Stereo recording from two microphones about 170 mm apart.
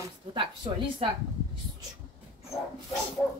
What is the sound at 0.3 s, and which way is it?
Speech, 30° right (ahead or behind).